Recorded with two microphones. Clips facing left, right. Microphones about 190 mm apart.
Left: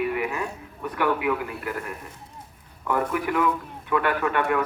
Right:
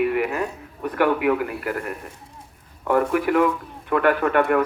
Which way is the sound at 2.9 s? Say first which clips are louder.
Right 6 dB; 50° right (ahead or behind).